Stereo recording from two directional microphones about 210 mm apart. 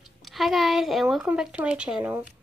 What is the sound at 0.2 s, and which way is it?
Speech, centre (ahead or behind).